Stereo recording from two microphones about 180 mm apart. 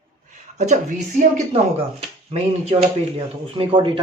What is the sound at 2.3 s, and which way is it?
Speech, 35° right (ahead or behind).